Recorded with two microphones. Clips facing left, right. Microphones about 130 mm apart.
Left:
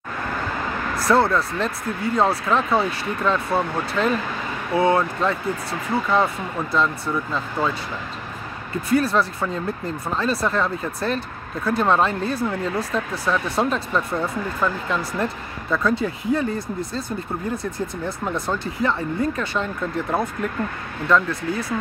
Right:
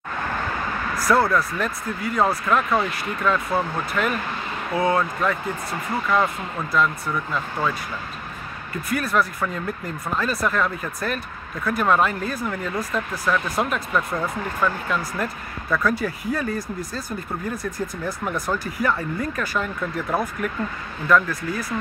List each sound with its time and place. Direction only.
0.9 s speech: 25° left (ahead or behind)
8.8 s speech: 30° left (ahead or behind)